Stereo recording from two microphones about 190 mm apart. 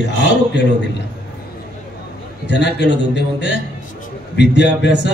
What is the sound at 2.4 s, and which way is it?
A man's voice, 65° left (ahead or behind).